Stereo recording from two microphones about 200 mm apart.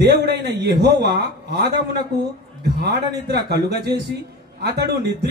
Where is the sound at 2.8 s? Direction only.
50° right (ahead or behind).